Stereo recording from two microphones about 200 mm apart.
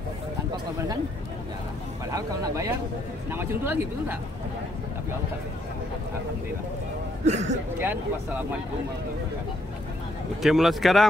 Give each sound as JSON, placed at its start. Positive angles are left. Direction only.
{"t": 2.0, "sound": "speech", "side_deg": -15}
{"t": 7.2, "sound": "a man's voice", "side_deg": -35}
{"t": 7.8, "sound": "speech", "side_deg": -10}
{"t": 10.4, "sound": "speech", "side_deg": 0}